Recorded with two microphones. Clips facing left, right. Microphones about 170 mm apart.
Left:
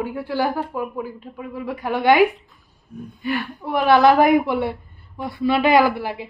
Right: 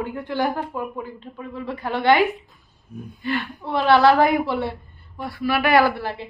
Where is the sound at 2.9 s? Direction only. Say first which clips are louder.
Left 1 dB; centre (ahead or behind).